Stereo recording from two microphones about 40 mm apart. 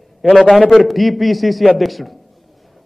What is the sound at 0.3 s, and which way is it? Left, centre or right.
A man's voice, centre.